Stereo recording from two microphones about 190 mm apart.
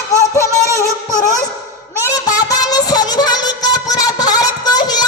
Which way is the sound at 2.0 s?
20° left (ahead or behind).